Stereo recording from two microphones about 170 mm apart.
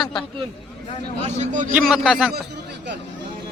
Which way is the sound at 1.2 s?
45° right (ahead or behind).